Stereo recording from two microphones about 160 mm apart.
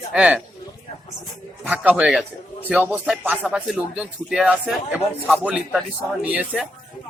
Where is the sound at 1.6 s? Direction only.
10° right (ahead or behind).